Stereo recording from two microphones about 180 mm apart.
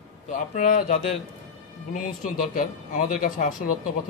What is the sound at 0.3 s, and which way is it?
Speech, 45° left (ahead or behind).